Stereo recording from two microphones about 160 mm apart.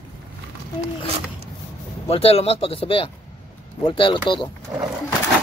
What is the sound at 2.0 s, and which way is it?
Speech, 40° left (ahead or behind).